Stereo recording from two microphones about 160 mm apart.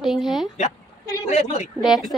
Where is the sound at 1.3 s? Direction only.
45° left (ahead or behind).